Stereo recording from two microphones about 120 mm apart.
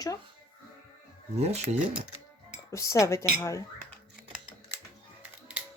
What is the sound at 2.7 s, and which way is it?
Speech, 25° left (ahead or behind).